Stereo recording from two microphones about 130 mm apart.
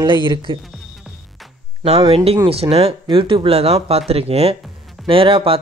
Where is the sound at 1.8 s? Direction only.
45° right (ahead or behind).